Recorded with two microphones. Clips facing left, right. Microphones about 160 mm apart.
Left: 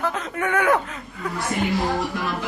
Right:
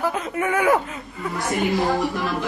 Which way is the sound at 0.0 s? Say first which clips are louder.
Right 2 dB; 10° right (ahead or behind).